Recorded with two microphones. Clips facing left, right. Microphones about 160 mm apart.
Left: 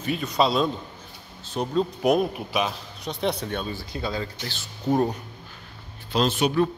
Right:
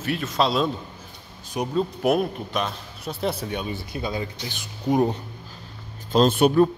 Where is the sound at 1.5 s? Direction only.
15° right (ahead or behind).